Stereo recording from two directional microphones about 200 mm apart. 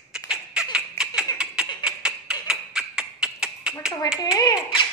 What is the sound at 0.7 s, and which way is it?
Baby laughter, 5° right (ahead or behind).